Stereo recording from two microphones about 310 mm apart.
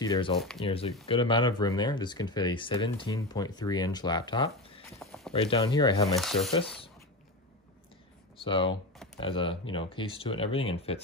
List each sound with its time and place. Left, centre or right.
0.0 s speech: centre
4.9 s clip-clop: centre
5.3 s speech: centre
6.1 s speech: centre
8.4 s speech: centre